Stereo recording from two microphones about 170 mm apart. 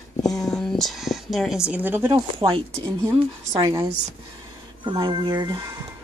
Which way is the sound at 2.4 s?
25° right (ahead or behind).